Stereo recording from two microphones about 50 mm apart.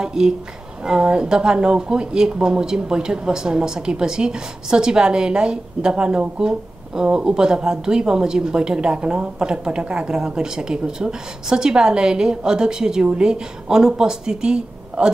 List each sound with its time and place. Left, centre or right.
0.0 s a woman's voice: centre